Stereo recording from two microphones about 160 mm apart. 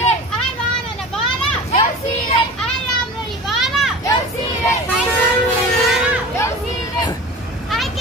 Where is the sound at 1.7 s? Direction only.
30° left (ahead or behind).